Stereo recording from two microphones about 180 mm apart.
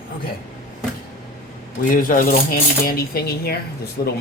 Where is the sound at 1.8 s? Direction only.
50° left (ahead or behind).